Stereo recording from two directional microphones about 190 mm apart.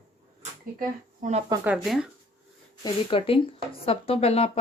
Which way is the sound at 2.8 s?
30° left (ahead or behind).